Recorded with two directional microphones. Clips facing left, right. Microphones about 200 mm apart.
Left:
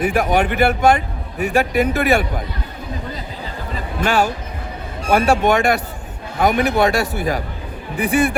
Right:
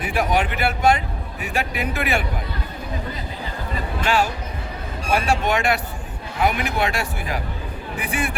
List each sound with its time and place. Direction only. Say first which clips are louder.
0.0 s a man's voice: left 5 dB; 45° left (ahead or behind)
4.0 s a man's voice: left 4 dB; 45° left (ahead or behind)